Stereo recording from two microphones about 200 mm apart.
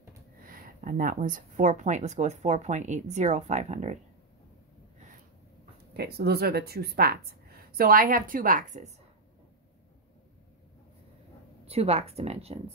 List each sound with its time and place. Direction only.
0.4 s speech: 45° right (ahead or behind)
5.9 s a woman's voice: 55° right (ahead or behind)
11.6 s speech: 30° right (ahead or behind)